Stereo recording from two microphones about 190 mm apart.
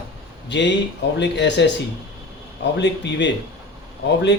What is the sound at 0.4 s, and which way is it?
A man's voice, 70° left (ahead or behind).